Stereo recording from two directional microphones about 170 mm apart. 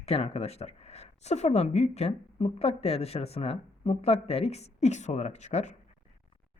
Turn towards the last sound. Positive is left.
turn(degrees=40)  # may be behind; listen again after turning